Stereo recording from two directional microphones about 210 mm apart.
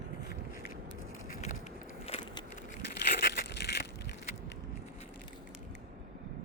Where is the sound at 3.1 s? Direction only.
50° left (ahead or behind).